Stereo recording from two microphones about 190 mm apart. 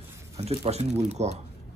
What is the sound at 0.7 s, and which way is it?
Speech, 35° right (ahead or behind).